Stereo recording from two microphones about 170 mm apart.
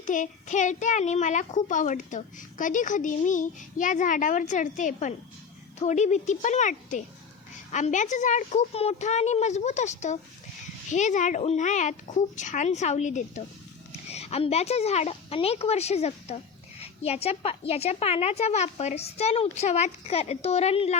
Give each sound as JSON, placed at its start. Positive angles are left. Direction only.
{"t": 0.0, "sound": "a woman's voice", "side_deg": 50}